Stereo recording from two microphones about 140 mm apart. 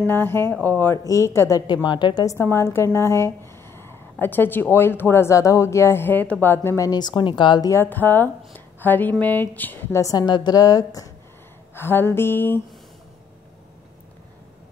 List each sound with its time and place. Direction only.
0.0 s a woman's voice: 15° left (ahead or behind)
1.7 s speech: 35° left (ahead or behind)
2.3 s a woman's voice: 20° left (ahead or behind)
6.9 s speech: 30° left (ahead or behind)
7.7 s a woman's voice: 15° left (ahead or behind)